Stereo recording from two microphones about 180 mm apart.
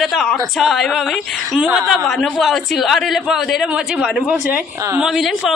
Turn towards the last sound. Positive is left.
turn(degrees=0)  # may be behind; listen again after turning